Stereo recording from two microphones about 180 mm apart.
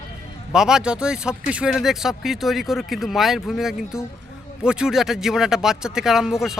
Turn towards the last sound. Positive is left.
turn(degrees=0)  # may be behind; listen again after turning